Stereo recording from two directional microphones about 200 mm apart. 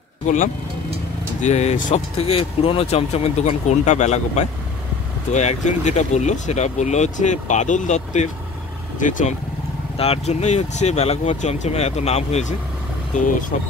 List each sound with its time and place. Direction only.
1.4 s speech: 35° left (ahead or behind)